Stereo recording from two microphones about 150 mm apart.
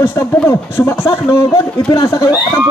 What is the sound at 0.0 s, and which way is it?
A man's voice, 15° left (ahead or behind).